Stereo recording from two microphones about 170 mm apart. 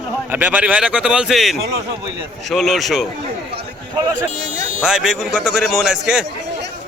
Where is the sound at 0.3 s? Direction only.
10° right (ahead or behind).